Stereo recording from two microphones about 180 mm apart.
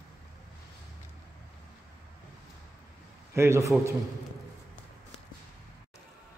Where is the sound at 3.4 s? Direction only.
15° right (ahead or behind).